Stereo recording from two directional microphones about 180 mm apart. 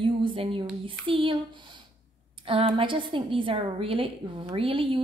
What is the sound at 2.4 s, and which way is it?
A woman's voice, 30° right (ahead or behind).